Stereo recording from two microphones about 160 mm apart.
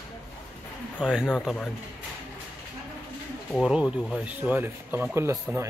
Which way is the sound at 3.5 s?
5° right (ahead or behind).